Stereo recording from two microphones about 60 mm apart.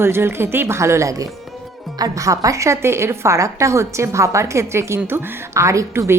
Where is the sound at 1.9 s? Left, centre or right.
Right.